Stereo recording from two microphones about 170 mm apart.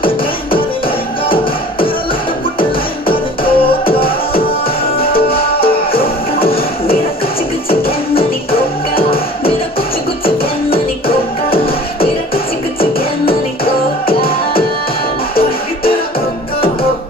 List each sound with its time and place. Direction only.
0.0 s music: 30° left (ahead or behind)
3.1 s music: 30° left (ahead or behind)
5.0 s music: 60° left (ahead or behind)
5.6 s music: 35° left (ahead or behind)
10.2 s music: 35° left (ahead or behind)